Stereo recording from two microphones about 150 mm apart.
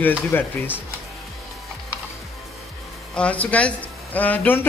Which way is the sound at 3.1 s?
10° left (ahead or behind).